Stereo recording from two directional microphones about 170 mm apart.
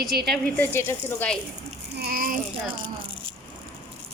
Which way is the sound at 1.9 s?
60° right (ahead or behind).